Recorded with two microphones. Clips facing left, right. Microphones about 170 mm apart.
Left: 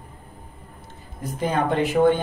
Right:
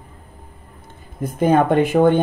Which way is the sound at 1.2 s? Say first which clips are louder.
Right 7 dB; 55° right (ahead or behind).